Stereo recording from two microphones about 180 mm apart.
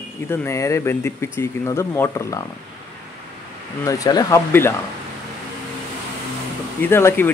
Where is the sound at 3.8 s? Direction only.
20° left (ahead or behind).